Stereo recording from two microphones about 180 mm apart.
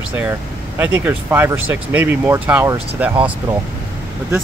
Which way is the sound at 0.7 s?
10° right (ahead or behind).